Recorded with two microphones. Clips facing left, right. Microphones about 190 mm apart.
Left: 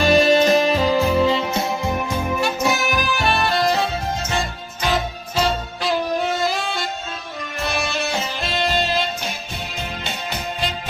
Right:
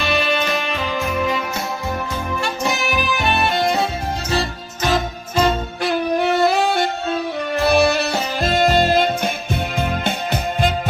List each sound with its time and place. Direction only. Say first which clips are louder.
0.0 s music: left 6 dB; 40° left (ahead or behind)
2.3 s music: left 1 dB; 5° left (ahead or behind)
3.3 s music: right 1 dB; 20° right (ahead or behind)
4.3 s music: right 3 dB; 40° right (ahead or behind)
5.4 s music: right 3 dB; 55° right (ahead or behind)
8.0 s music: right 4 dB; 45° right (ahead or behind)